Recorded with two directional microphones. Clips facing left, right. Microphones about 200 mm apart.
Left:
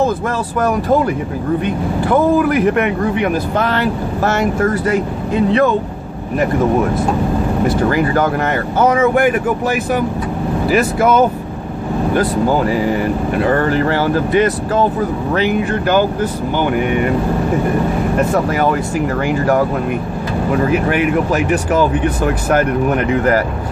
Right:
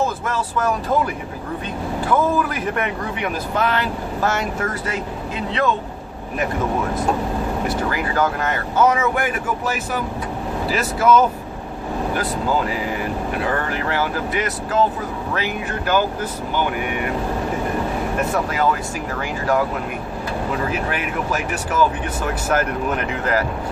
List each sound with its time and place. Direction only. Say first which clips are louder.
2.0 s speech: left 6 dB; 60° left (ahead or behind)
7.9 s speech: left 6 dB; 55° left (ahead or behind)
18.3 s speech: left 5 dB; 55° left (ahead or behind)